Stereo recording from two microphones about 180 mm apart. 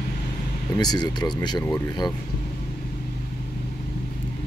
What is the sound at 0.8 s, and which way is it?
Speech, 25° left (ahead or behind).